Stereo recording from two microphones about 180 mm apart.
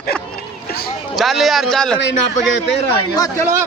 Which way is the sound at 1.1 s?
Centre (ahead or behind).